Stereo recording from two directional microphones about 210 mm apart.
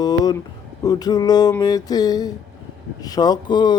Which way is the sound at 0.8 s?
20° left (ahead or behind).